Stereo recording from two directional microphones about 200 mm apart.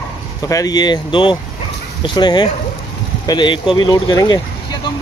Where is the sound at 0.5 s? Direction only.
20° left (ahead or behind).